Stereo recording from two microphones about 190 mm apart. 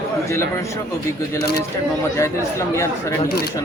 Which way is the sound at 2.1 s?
15° left (ahead or behind).